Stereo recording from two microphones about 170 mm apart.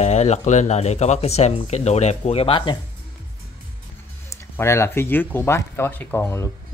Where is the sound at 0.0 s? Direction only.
40° left (ahead or behind).